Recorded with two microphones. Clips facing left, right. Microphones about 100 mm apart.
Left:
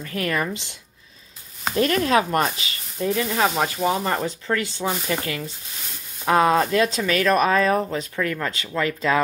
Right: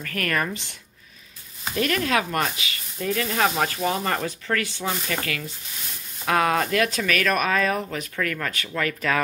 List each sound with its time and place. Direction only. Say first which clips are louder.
0.0 s speech: left 1 dB; 20° left (ahead or behind)
1.8 s speech: left 4 dB; 30° left (ahead or behind)
3.0 s speech: left 3 dB; 20° left (ahead or behind)
3.3 s speech: left 1 dB; 10° left (ahead or behind)